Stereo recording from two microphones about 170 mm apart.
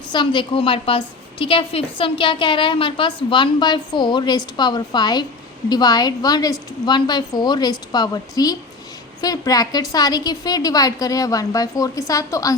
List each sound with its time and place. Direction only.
0.1 s a woman's voice: 25° left (ahead or behind)